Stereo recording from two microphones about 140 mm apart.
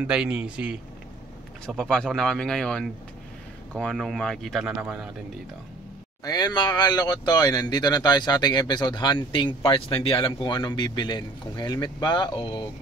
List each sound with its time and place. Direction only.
0.0 s speech: 5° right (ahead or behind)
1.7 s speech: 5° left (ahead or behind)
6.2 s speech: 30° left (ahead or behind)